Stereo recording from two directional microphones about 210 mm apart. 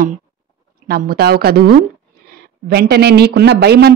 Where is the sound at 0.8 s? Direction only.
45° right (ahead or behind).